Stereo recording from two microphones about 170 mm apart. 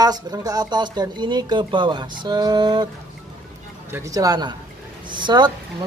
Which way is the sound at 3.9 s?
20° right (ahead or behind).